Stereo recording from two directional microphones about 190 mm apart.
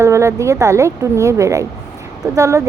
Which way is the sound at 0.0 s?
15° right (ahead or behind).